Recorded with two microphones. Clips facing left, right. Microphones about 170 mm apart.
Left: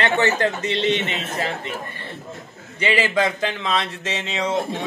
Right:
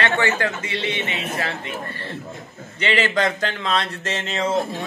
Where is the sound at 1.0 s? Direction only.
15° right (ahead or behind).